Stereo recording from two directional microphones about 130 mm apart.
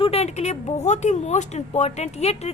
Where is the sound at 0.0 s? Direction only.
55° left (ahead or behind).